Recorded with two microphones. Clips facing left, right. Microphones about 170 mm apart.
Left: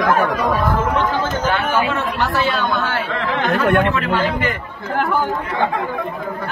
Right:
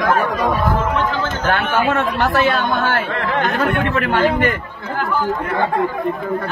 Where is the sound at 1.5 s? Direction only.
50° right (ahead or behind).